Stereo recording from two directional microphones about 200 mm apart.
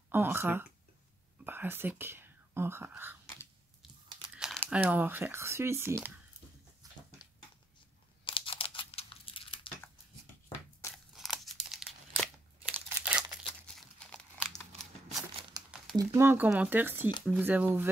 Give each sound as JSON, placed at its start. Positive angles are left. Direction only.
{"t": 0.1, "sound": "speech", "side_deg": -10}
{"t": 4.4, "sound": "speech", "side_deg": 0}
{"t": 8.3, "sound": "tearing", "side_deg": 25}
{"t": 10.9, "sound": "crumpling", "side_deg": 0}
{"t": 15.5, "sound": "crumpling", "side_deg": -20}
{"t": 16.0, "sound": "speech", "side_deg": -15}